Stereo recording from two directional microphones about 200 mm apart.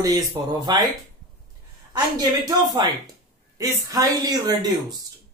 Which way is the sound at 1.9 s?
20° right (ahead or behind).